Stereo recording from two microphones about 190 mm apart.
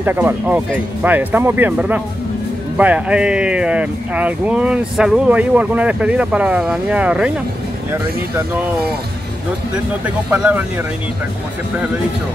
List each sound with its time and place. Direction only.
0.0 s speech: 10° right (ahead or behind)
10.0 s speech: 10° right (ahead or behind)